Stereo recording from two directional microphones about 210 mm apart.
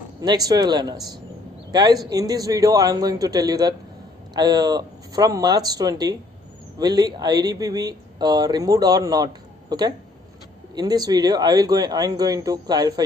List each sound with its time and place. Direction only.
0.2 s a man's voice: 20° right (ahead or behind)